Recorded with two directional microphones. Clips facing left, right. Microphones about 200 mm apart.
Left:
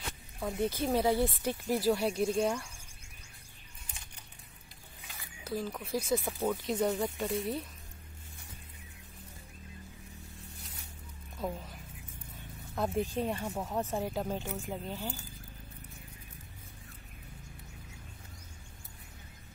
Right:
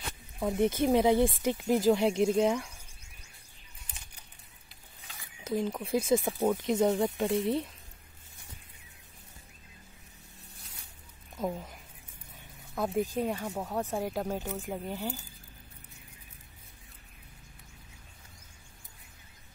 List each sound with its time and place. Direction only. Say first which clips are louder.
0.4 s speech: right 5 dB; 20° right (ahead or behind)
5.5 s speech: right 5 dB; 20° right (ahead or behind)
5.9 s speech: right 5 dB; 50° right (ahead or behind)
6.1 s speech: right 4 dB; 20° right (ahead or behind)
12.4 s speech: right 1 dB; 15° right (ahead or behind)